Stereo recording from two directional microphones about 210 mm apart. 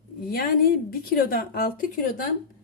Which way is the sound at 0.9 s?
45° left (ahead or behind).